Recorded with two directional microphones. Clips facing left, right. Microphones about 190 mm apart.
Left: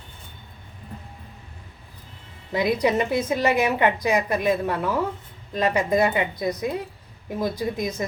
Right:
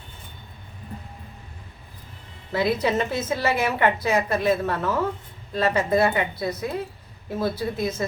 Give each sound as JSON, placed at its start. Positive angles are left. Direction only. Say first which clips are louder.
{"t": 2.5, "sound": "a woman's voice", "louder": "left 1 dB", "side_deg": 15}